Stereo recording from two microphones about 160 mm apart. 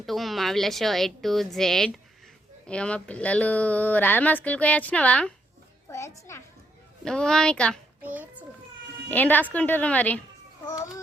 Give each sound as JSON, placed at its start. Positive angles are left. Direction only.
{"t": 0.0, "sound": "a woman's voice", "side_deg": 0}
{"t": 7.0, "sound": "a woman's voice", "side_deg": 5}
{"t": 8.0, "sound": "a child's voice", "side_deg": -10}
{"t": 9.0, "sound": "speech", "side_deg": 10}
{"t": 10.7, "sound": "a child's voice", "side_deg": 20}